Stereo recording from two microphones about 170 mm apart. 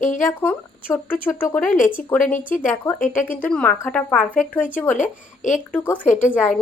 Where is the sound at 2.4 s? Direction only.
50° left (ahead or behind).